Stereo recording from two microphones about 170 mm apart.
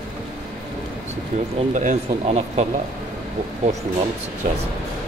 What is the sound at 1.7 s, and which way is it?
Speech, 50° right (ahead or behind).